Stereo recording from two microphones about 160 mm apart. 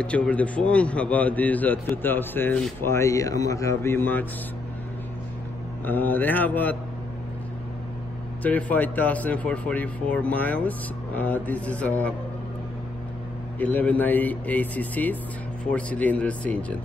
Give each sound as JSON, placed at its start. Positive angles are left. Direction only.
{"t": 0.0, "sound": "a man's voice", "side_deg": 5}
{"t": 5.9, "sound": "a man's voice", "side_deg": 10}
{"t": 8.4, "sound": "a man's voice", "side_deg": 10}
{"t": 13.6, "sound": "a man's voice", "side_deg": 10}